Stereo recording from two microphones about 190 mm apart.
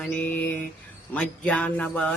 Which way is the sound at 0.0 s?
10° left (ahead or behind).